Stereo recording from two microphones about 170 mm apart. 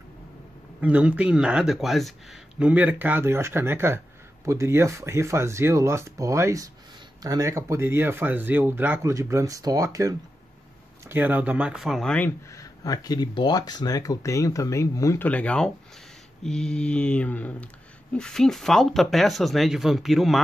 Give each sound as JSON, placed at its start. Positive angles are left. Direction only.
{"t": 0.7, "sound": "speech", "side_deg": -10}
{"t": 12.3, "sound": "speech", "side_deg": 20}
{"t": 16.4, "sound": "mantra", "side_deg": 5}
{"t": 18.1, "sound": "speech", "side_deg": 5}